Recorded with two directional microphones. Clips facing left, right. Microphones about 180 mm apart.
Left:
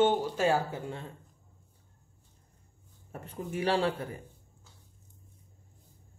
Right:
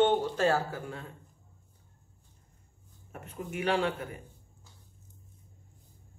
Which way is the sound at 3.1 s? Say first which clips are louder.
Left 2 dB; 30° left (ahead or behind).